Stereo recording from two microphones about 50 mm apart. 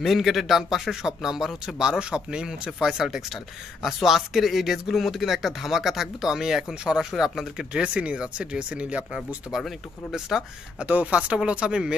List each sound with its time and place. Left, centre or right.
0.0 s speech: centre
7.7 s speech: right
10.3 s speech: centre
10.8 s speech: right